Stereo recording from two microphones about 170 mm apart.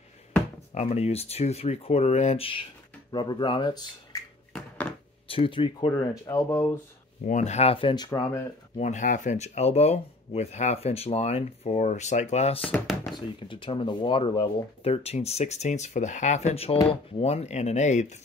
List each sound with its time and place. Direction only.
0.7 s speech: 40° left (ahead or behind)
5.3 s speech: 30° left (ahead or behind); by 6.8 s 15° left (ahead or behind)
7.2 s speech: 45° left (ahead or behind); by 8.4 s 20° left (ahead or behind)
8.7 s speech: 45° left (ahead or behind)
12.7 s speech: centre (ahead or behind)
13.4 s speech: 30° left (ahead or behind)